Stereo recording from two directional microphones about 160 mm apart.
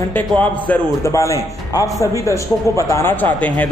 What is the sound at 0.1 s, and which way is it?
Speech, 10° left (ahead or behind).